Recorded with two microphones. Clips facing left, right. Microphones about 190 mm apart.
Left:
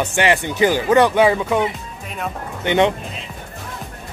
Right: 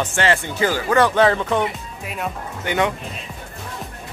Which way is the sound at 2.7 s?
25° left (ahead or behind).